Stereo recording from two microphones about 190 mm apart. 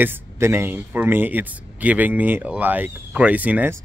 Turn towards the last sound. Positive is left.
turn(degrees=-10)  # may be behind; listen again after turning